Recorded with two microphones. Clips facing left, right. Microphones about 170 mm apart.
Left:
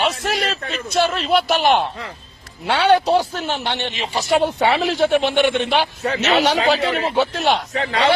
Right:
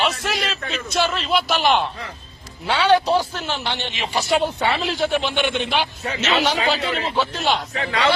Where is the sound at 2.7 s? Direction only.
55° left (ahead or behind).